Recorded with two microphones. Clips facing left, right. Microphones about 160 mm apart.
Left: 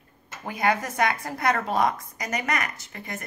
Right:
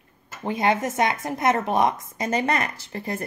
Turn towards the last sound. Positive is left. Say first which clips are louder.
# right 7 dB
turn(degrees=-30)  # may be behind; listen again after turning